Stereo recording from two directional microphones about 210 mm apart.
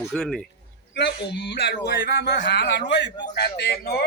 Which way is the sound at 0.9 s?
55° left (ahead or behind).